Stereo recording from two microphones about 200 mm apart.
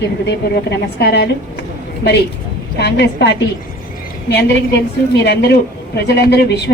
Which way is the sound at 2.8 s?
55° left (ahead or behind).